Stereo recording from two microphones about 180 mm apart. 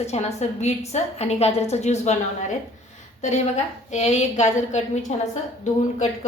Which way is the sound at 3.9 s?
40° left (ahead or behind).